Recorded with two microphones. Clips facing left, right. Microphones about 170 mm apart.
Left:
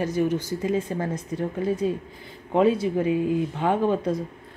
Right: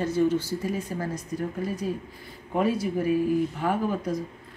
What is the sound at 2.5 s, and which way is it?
Speech, 25° left (ahead or behind).